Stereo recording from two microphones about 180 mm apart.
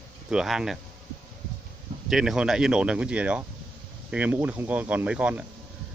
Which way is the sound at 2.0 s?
Centre (ahead or behind).